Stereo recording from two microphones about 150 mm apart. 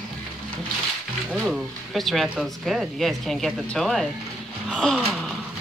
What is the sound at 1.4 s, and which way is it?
Speech, centre (ahead or behind).